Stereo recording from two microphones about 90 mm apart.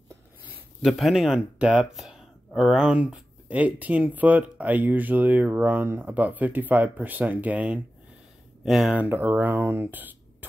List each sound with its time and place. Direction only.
0.8 s speech: centre (ahead or behind)
1.6 s speech: 15° right (ahead or behind)
8.6 s speech: 5° right (ahead or behind)
8.9 s speech: 20° right (ahead or behind)